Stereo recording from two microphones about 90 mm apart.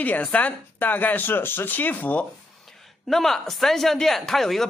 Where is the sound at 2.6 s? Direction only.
Centre (ahead or behind).